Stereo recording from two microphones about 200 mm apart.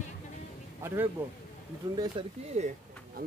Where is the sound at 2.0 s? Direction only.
30° right (ahead or behind).